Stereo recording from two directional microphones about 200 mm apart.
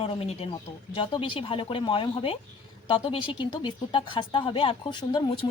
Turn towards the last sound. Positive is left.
turn(degrees=25)  # may be behind; listen again after turning